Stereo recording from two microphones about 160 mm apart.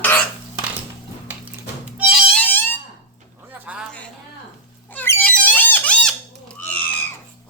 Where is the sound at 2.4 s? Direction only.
10° left (ahead or behind).